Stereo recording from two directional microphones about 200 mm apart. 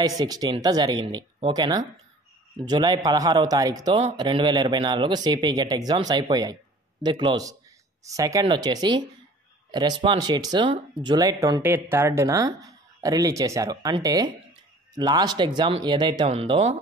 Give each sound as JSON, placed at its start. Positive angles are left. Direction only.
{"t": 0.0, "sound": "speech", "side_deg": -20}